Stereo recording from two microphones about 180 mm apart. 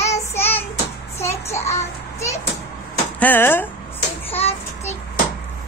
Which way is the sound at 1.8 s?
15° left (ahead or behind).